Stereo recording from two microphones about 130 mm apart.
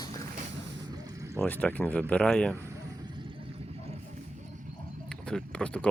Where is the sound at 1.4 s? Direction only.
10° left (ahead or behind).